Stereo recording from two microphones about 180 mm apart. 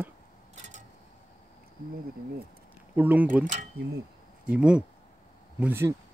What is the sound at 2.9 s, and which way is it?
Speech, 10° right (ahead or behind).